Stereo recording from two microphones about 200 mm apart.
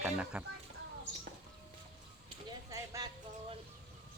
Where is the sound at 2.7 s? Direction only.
15° right (ahead or behind).